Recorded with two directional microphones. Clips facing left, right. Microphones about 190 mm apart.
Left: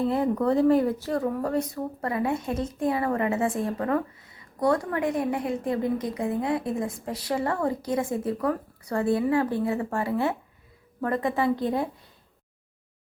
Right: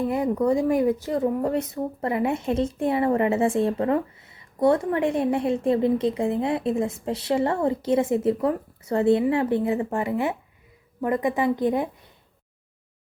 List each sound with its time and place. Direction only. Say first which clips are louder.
0.0 s speech: right 1 dB; 15° right (ahead or behind)